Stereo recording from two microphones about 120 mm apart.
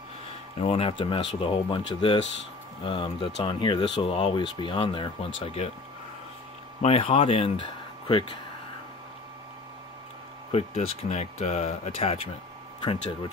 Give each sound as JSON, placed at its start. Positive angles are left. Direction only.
{"t": 0.6, "sound": "speech", "side_deg": 55}
{"t": 6.8, "sound": "speech", "side_deg": 55}
{"t": 10.5, "sound": "speech", "side_deg": 55}
{"t": 12.8, "sound": "speech", "side_deg": 40}